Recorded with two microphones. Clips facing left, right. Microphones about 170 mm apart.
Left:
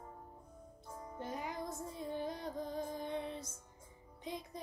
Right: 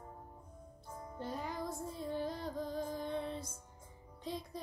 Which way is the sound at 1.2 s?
20° left (ahead or behind).